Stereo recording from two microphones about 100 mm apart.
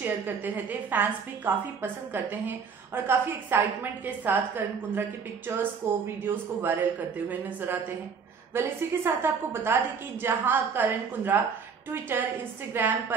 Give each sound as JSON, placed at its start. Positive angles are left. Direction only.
{"t": 0.7, "sound": "a woman's voice", "side_deg": -20}